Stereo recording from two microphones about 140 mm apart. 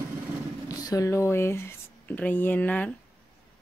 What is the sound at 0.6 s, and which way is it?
Speech, 25° left (ahead or behind).